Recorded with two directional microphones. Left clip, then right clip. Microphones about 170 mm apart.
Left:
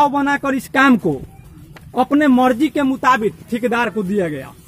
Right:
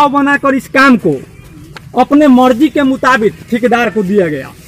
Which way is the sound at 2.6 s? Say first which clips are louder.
Right 5 dB; 20° left (ahead or behind).